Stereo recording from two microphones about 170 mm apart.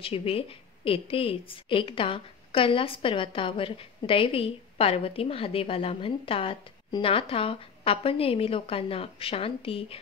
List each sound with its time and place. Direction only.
0.0 s a woman's voice: 35° left (ahead or behind)